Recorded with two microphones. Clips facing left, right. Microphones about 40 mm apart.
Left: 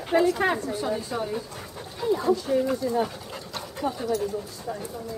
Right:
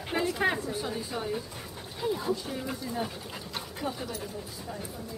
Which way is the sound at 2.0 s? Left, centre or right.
Centre.